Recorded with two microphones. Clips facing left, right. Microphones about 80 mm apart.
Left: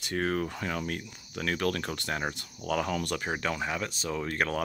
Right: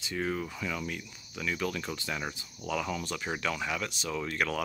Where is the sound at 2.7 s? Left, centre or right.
Left.